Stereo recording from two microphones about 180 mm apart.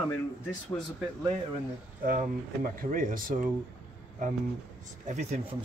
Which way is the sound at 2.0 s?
50° right (ahead or behind).